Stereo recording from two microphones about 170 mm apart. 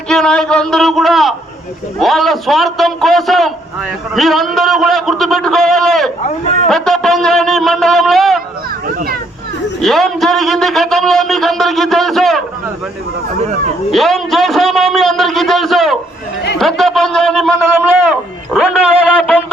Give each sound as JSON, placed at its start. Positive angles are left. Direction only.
{"t": 0.1, "sound": "a man's voice", "side_deg": 5}
{"t": 8.9, "sound": "a child's voice", "side_deg": -60}
{"t": 9.8, "sound": "a man's voice", "side_deg": 0}
{"t": 13.9, "sound": "a man's voice", "side_deg": 0}